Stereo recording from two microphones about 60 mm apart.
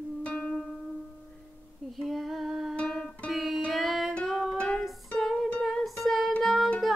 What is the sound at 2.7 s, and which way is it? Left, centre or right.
Music, centre.